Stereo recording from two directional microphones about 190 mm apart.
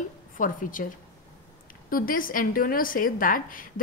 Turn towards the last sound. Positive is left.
turn(degrees=45)  # may be behind; listen again after turning